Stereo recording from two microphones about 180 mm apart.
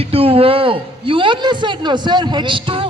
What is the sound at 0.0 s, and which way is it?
Speech, 30° right (ahead or behind).